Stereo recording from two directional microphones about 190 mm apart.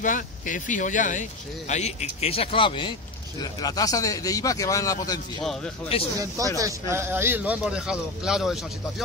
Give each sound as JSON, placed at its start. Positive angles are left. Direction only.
{"t": 0.0, "sound": "a man's voice", "side_deg": 45}
{"t": 6.5, "sound": "a man's voice", "side_deg": -15}